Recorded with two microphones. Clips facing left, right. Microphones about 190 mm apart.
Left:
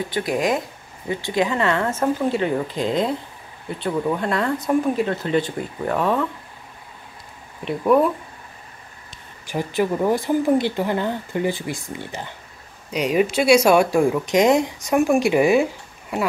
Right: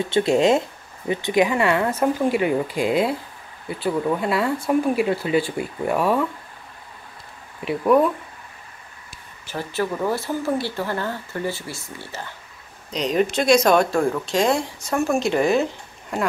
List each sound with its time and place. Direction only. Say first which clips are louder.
0.0 s speech: right 4 dB; 25° right (ahead or behind); by 6.2 s 10° right (ahead or behind)
7.6 s speech: even; centre (ahead or behind)
9.5 s speech: left 4 dB; 15° left (ahead or behind)